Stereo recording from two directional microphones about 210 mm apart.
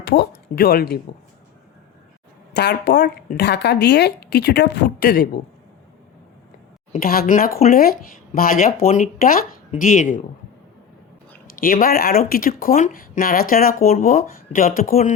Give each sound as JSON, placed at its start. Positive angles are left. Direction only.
{"t": 0.1, "sound": "speech", "side_deg": 50}
{"t": 2.5, "sound": "speech", "side_deg": 50}
{"t": 6.9, "sound": "speech", "side_deg": 45}
{"t": 11.6, "sound": "speech", "side_deg": 45}